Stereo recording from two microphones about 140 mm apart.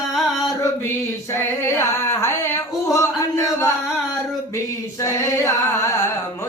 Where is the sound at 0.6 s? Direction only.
20° left (ahead or behind).